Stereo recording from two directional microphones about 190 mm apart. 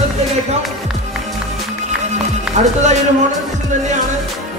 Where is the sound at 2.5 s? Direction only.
40° right (ahead or behind).